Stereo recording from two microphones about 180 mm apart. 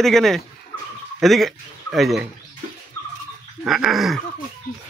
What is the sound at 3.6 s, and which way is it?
Speech, centre (ahead or behind).